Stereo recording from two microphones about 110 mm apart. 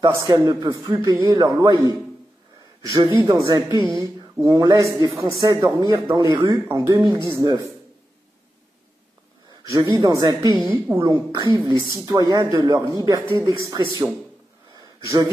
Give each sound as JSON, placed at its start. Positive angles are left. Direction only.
{"t": 0.0, "sound": "a man's voice", "side_deg": -35}
{"t": 4.4, "sound": "a man's voice", "side_deg": -45}
{"t": 5.8, "sound": "a man's voice", "side_deg": -40}
{"t": 9.5, "sound": "a man's voice", "side_deg": -40}
{"t": 14.7, "sound": "a sound", "side_deg": -35}